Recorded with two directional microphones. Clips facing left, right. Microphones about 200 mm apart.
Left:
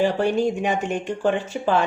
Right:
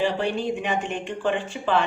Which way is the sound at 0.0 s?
45° left (ahead or behind).